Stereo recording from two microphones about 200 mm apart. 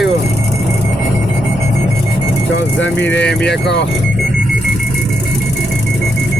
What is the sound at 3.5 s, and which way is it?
Speech, 60° left (ahead or behind).